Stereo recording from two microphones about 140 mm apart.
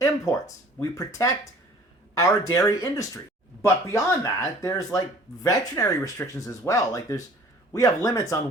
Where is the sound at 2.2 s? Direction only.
20° left (ahead or behind).